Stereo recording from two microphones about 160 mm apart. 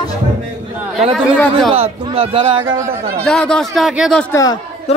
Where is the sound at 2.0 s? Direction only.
35° right (ahead or behind).